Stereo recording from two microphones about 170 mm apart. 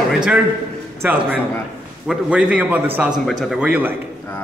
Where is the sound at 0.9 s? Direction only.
10° right (ahead or behind).